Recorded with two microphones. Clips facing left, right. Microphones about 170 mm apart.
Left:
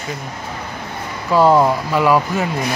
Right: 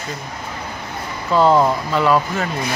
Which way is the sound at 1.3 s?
10° left (ahead or behind).